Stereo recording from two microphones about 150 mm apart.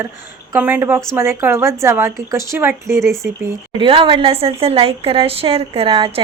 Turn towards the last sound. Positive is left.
turn(degrees=-35)  # may be behind; listen again after turning